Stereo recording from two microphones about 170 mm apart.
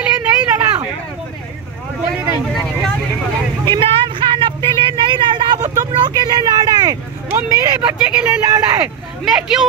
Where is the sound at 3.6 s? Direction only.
30° right (ahead or behind).